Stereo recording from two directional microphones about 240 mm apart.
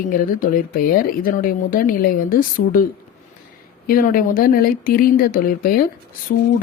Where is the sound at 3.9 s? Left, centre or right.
Left.